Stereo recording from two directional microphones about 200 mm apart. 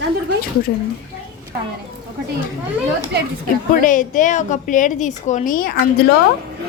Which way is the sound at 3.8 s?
40° left (ahead or behind).